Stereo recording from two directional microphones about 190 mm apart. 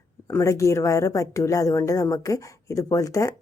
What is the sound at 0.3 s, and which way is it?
A woman's voice, 15° left (ahead or behind).